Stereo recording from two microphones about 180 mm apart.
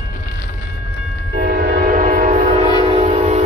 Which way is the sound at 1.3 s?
60° right (ahead or behind).